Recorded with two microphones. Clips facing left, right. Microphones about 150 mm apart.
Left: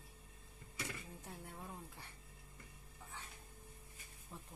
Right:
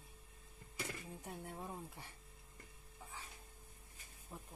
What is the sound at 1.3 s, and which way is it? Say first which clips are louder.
Speech: right 4 dB; 20° right (ahead or behind).